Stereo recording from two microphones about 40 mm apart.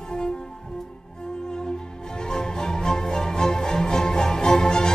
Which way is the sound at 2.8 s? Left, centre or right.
Centre.